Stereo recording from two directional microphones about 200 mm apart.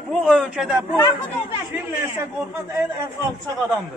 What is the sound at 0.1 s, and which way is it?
Speech, centre (ahead or behind).